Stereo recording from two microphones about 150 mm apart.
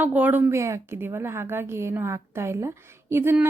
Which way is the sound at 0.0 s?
10° right (ahead or behind).